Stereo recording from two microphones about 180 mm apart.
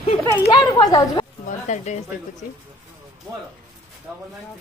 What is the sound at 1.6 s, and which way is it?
Speech, 40° left (ahead or behind).